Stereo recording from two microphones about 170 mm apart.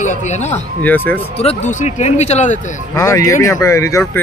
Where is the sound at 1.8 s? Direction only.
40° left (ahead or behind).